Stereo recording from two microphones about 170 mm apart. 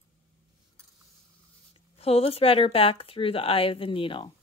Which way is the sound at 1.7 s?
35° left (ahead or behind).